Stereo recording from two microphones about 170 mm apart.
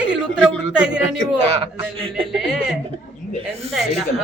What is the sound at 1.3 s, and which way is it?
Speech, 35° right (ahead or behind).